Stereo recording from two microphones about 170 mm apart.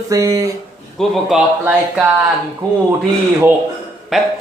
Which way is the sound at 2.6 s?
25° right (ahead or behind).